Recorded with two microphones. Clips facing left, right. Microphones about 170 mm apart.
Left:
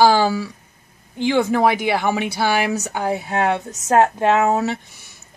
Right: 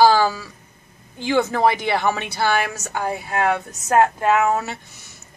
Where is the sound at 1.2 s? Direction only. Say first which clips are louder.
Left 2 dB; 15° left (ahead or behind).